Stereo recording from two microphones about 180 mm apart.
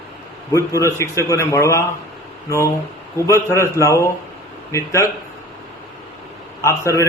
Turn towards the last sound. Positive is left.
turn(degrees=15)  # may be behind; listen again after turning